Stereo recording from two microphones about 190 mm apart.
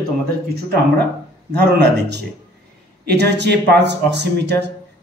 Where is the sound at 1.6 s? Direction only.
60° right (ahead or behind).